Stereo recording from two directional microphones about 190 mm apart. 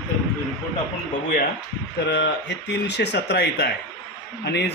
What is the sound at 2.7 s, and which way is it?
Speech, 60° left (ahead or behind).